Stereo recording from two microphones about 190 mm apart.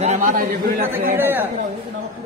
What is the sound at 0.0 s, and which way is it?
Speech, 40° right (ahead or behind).